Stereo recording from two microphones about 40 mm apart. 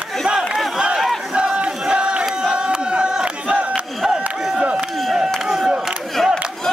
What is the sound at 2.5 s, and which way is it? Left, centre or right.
Crowd, right.